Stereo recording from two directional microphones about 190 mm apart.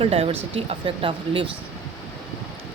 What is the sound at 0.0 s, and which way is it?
Speech, 30° right (ahead or behind).